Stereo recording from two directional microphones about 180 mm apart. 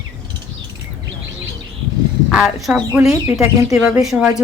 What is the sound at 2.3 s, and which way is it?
Speech, centre (ahead or behind).